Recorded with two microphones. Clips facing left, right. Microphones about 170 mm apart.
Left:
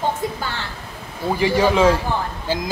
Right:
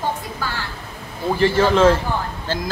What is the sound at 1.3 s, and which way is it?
Speech, 15° left (ahead or behind).